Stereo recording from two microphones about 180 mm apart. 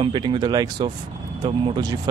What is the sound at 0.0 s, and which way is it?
Speech, 25° right (ahead or behind).